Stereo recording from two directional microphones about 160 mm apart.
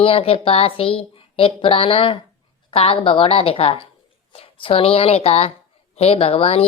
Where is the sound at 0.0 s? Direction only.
35° left (ahead or behind).